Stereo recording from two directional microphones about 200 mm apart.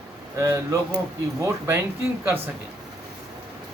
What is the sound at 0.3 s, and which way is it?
Speech, 15° right (ahead or behind).